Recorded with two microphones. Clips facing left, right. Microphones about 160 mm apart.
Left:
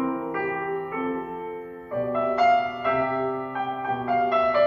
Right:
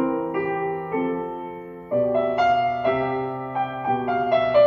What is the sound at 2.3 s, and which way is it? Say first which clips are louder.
Music: right 1 dB; 20° right (ahead or behind).